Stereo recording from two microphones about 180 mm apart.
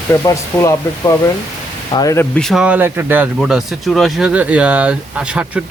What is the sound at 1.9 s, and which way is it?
Speech, 15° left (ahead or behind).